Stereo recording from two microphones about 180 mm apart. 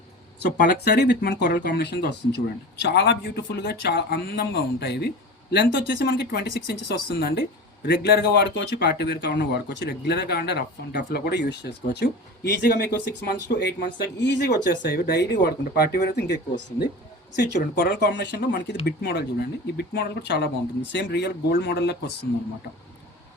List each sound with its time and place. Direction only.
0.6 s speech: 65° left (ahead or behind)